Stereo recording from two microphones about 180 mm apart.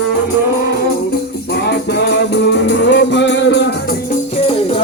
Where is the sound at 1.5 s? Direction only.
65° left (ahead or behind).